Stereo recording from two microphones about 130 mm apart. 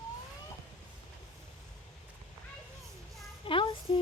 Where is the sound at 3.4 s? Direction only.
40° left (ahead or behind).